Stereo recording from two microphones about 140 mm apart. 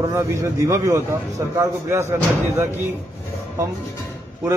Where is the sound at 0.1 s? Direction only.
20° right (ahead or behind).